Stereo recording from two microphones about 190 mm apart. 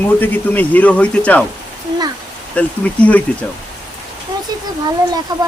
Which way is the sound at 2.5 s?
10° left (ahead or behind).